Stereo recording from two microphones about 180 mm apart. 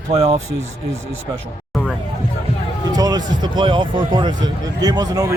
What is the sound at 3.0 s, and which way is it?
Speech, 20° right (ahead or behind).